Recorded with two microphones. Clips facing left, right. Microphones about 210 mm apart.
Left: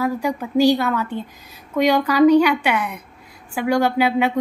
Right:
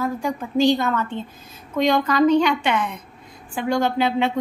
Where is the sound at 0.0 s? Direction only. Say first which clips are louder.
Left 3 dB; 10° left (ahead or behind).